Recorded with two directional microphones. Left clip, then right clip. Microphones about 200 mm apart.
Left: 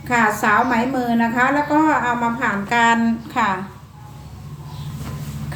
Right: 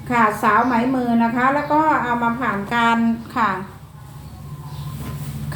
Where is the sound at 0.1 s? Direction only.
25° left (ahead or behind).